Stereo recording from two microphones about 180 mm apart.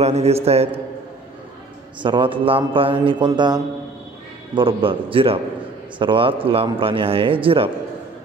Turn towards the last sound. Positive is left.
turn(degrees=-30)  # may be behind; listen again after turning